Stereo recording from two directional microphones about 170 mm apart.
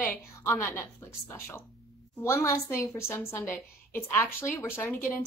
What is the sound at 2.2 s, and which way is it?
A woman's voice, 15° left (ahead or behind).